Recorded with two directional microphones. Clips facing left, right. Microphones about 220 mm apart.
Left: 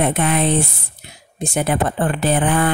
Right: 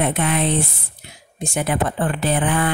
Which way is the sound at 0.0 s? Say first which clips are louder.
Left 2 dB; 45° left (ahead or behind).